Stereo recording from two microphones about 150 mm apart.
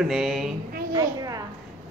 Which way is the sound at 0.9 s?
25° right (ahead or behind).